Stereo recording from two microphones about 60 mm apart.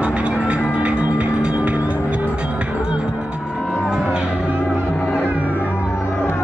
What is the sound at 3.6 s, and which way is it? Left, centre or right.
Music, centre.